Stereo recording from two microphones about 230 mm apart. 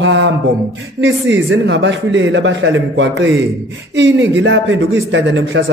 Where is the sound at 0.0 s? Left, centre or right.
Right.